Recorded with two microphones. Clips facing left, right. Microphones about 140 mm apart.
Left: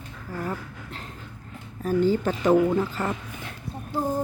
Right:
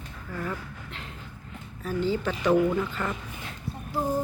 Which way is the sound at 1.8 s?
45° left (ahead or behind).